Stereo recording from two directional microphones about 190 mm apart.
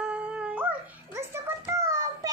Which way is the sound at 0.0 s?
5° right (ahead or behind).